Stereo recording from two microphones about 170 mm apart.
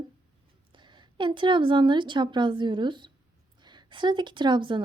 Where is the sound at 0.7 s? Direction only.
25° right (ahead or behind).